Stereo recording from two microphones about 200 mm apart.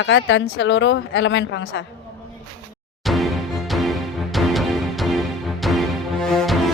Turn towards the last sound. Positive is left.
turn(degrees=0)  # may be behind; listen again after turning